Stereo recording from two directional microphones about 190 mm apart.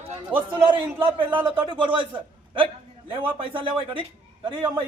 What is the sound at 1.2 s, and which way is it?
Speech, 10° right (ahead or behind).